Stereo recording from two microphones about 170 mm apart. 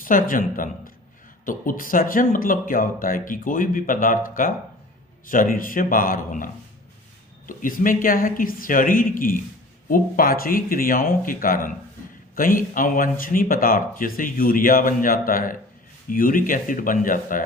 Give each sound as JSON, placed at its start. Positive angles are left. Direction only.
{"t": 0.0, "sound": "speech", "side_deg": 55}